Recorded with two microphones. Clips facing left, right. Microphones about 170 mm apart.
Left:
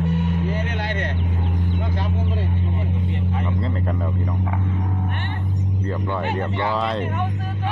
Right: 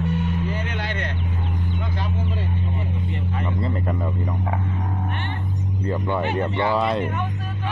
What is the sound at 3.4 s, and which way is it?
Speech, 5° right (ahead or behind).